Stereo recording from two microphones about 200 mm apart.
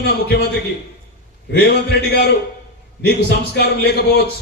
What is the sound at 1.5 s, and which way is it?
Speech, 55° left (ahead or behind).